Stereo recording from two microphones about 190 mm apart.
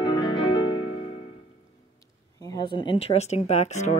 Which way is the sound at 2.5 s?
25° left (ahead or behind).